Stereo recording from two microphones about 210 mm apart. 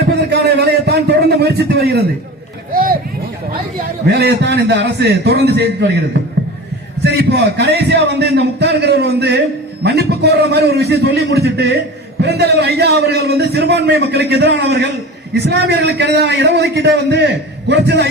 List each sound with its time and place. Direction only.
0.3 s a man's voice: 50° right (ahead or behind)
3.5 s a man's voice: 45° right (ahead or behind)
7.0 s a man's voice: 55° right (ahead or behind)